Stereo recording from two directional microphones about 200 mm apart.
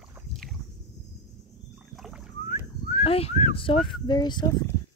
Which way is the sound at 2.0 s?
Centre (ahead or behind).